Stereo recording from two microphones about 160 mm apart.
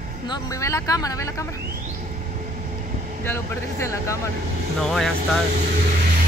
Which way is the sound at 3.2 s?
15° left (ahead or behind).